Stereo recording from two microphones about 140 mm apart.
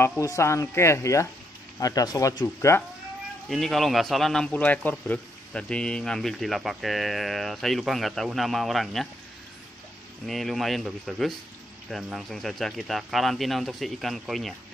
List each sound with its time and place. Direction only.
0.2 s speech: 20° left (ahead or behind)
3.4 s a man's voice: centre (ahead or behind)
10.2 s a man's voice: centre (ahead or behind)